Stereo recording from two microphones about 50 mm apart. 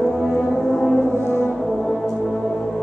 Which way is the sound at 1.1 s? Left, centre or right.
Left.